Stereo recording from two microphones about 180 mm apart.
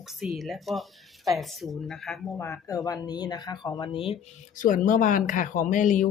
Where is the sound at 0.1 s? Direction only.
Centre (ahead or behind).